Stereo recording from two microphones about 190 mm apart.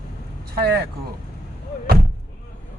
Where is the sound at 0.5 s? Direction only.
55° right (ahead or behind).